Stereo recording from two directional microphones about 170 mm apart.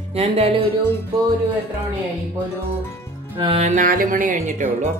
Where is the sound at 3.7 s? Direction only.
50° right (ahead or behind).